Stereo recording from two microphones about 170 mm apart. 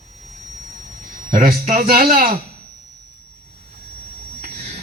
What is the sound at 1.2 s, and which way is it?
A man's voice, 55° right (ahead or behind).